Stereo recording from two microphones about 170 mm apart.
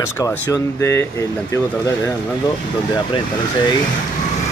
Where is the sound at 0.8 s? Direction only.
15° left (ahead or behind).